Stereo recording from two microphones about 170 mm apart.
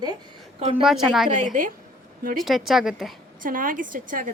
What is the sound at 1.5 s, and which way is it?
Speech, 50° right (ahead or behind).